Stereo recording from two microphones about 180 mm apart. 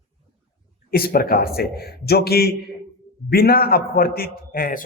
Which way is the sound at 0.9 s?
55° left (ahead or behind).